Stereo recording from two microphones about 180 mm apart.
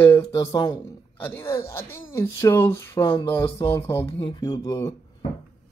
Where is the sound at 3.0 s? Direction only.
30° left (ahead or behind).